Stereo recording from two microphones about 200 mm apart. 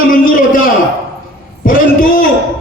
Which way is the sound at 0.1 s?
45° left (ahead or behind).